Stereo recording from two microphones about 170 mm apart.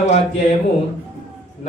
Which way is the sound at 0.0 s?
40° left (ahead or behind).